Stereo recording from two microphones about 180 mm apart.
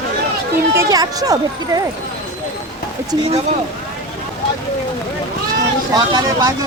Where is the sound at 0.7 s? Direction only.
20° right (ahead or behind).